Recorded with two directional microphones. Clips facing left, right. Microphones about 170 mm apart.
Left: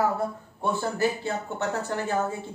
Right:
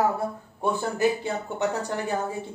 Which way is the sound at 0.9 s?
15° right (ahead or behind).